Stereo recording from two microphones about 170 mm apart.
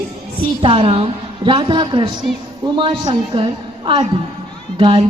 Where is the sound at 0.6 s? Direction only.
35° right (ahead or behind).